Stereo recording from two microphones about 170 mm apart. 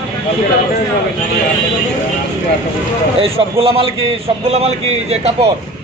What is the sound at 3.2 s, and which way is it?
A man's voice, 35° right (ahead or behind).